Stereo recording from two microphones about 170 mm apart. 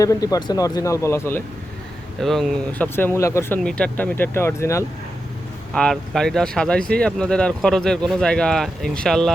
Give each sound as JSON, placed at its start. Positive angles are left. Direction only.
{"t": 0.0, "sound": "speech", "side_deg": 20}
{"t": 2.1, "sound": "speech", "side_deg": 0}
{"t": 3.6, "sound": "speech", "side_deg": 5}
{"t": 5.7, "sound": "speech", "side_deg": 5}